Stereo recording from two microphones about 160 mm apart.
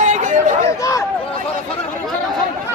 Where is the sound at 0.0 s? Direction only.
50° right (ahead or behind).